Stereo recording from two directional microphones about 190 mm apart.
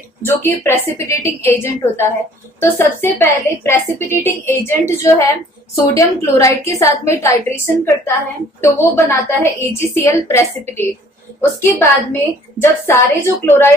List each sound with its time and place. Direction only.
0.2 s a woman's voice: 10° left (ahead or behind)